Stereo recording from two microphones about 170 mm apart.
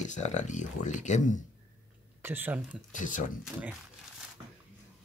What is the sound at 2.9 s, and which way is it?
Speech, 50° left (ahead or behind).